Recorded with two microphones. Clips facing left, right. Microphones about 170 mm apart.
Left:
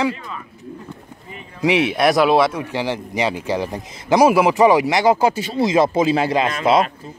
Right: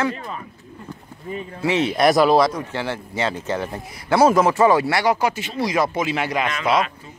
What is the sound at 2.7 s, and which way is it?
Speech, 15° left (ahead or behind).